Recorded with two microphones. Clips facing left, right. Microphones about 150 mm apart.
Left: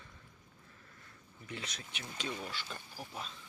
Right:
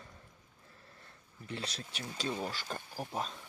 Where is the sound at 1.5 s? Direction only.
30° right (ahead or behind).